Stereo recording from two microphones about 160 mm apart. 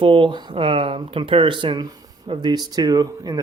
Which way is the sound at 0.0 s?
30° right (ahead or behind).